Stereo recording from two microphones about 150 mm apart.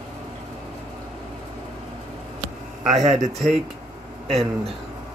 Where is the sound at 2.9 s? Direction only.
55° right (ahead or behind).